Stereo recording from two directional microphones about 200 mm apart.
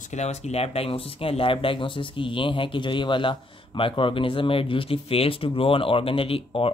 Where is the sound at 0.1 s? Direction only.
35° left (ahead or behind).